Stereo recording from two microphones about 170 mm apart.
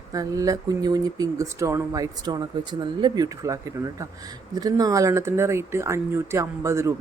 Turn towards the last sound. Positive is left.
turn(degrees=-15)  # may be behind; listen again after turning